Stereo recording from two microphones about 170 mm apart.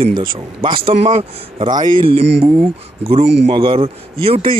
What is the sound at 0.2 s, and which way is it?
Speech, 30° right (ahead or behind).